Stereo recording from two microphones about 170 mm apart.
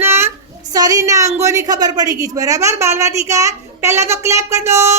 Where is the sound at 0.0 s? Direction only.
15° right (ahead or behind).